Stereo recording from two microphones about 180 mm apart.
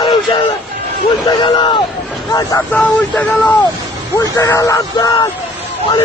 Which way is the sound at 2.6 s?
5° left (ahead or behind).